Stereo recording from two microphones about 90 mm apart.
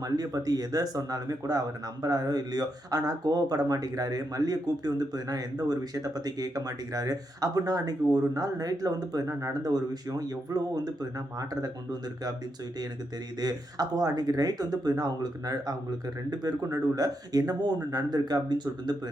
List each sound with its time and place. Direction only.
0.0 s speech: 40° right (ahead or behind)
13.4 s speech: 45° right (ahead or behind)